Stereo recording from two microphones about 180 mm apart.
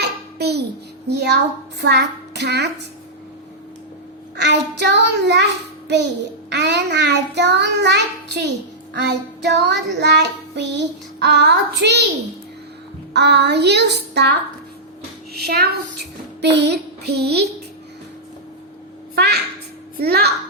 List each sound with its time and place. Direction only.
0.0 s child singing: 65° right (ahead or behind)
4.4 s child singing: 75° right (ahead or behind)
6.5 s child singing: 75° right (ahead or behind)
13.1 s child singing: 70° right (ahead or behind)
15.3 s a child's voice: 60° right (ahead or behind)
16.4 s child singing: 70° right (ahead or behind)
19.1 s a child's voice: 65° right (ahead or behind)
20.0 s child singing: 60° right (ahead or behind)